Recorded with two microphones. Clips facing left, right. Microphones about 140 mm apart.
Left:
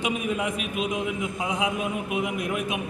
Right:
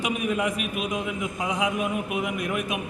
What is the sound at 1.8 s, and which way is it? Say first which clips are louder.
Speech: even; 25° left (ahead or behind).